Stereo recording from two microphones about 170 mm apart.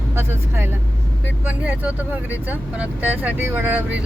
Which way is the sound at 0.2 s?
15° right (ahead or behind).